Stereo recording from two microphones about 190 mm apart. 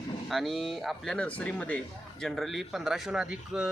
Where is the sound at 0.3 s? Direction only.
Centre (ahead or behind).